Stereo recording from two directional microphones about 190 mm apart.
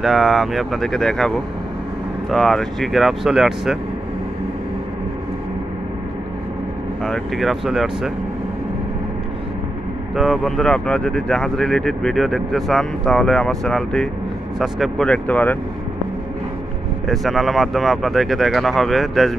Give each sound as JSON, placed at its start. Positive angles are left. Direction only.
{"t": 0.0, "sound": "speech", "side_deg": 0}
{"t": 7.1, "sound": "speech", "side_deg": 0}
{"t": 10.1, "sound": "speech", "side_deg": 0}
{"t": 17.1, "sound": "speech", "side_deg": 0}